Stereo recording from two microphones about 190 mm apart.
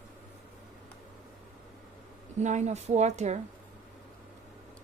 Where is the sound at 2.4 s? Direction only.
40° right (ahead or behind).